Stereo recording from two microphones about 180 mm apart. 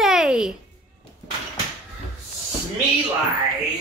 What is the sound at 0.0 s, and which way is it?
Music, centre (ahead or behind).